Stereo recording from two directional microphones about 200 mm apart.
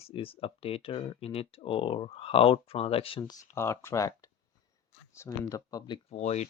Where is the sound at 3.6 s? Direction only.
10° left (ahead or behind).